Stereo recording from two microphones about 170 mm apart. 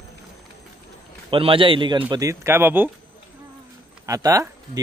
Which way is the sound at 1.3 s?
30° right (ahead or behind).